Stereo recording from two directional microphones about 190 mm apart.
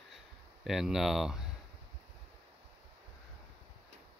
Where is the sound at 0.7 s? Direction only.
Centre (ahead or behind).